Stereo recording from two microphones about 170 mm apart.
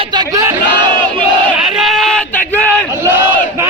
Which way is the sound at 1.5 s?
Centre (ahead or behind).